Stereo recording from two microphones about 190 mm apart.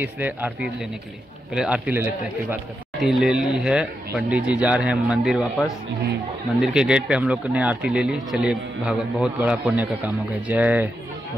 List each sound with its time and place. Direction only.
0.0 s speech: 10° right (ahead or behind)
6.6 s speech: 5° right (ahead or behind)